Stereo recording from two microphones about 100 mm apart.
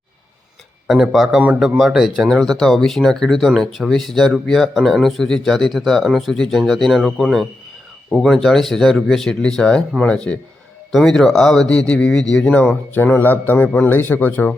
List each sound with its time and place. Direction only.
0.9 s a man's voice: centre (ahead or behind); by 14.5 s 15° left (ahead or behind)